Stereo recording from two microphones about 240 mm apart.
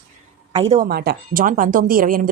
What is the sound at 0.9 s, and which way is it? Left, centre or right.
A woman's voice, right.